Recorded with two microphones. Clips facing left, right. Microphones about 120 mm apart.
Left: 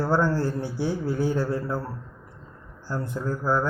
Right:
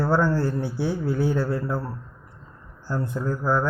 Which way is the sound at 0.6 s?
15° right (ahead or behind).